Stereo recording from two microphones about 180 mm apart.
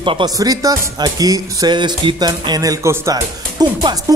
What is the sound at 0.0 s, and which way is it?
Speech, 25° right (ahead or behind).